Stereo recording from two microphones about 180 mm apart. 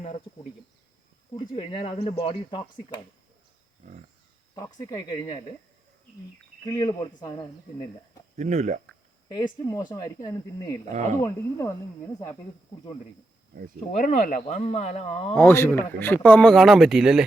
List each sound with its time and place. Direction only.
1.4 s speech: 30° left (ahead or behind)
4.5 s speech: 20° left (ahead or behind)
6.7 s speech: 20° left (ahead or behind)
8.4 s speech: 40° right (ahead or behind)
9.3 s speech: 20° left (ahead or behind)
10.9 s speech: 40° right (ahead or behind)
11.2 s speech: 15° left (ahead or behind)
13.9 s speech: 45° left (ahead or behind)
14.6 s speech: 35° left (ahead or behind)
15.4 s speech: 15° left (ahead or behind); by 17.2 s 5° right (ahead or behind)